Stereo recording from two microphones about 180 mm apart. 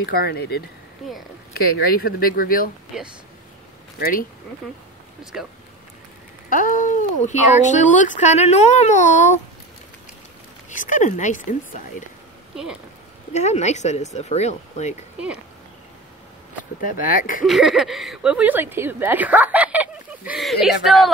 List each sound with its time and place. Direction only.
0.0 s speech: 60° left (ahead or behind)
1.0 s speech: centre (ahead or behind)
1.5 s speech: 55° left (ahead or behind)
4.0 s speech: 50° left (ahead or behind)
5.2 s speech: 5° right (ahead or behind)
6.5 s speech: 50° left (ahead or behind)
10.7 s speech: 45° left (ahead or behind)
13.3 s speech: 40° left (ahead or behind)
16.8 s speech: 50° left (ahead or behind)
17.5 s a woman's voice: centre (ahead or behind)